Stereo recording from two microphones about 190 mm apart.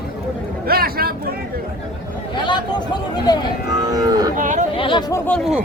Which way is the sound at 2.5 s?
20° left (ahead or behind).